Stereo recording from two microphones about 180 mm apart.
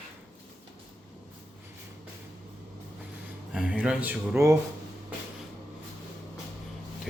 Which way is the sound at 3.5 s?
5° right (ahead or behind).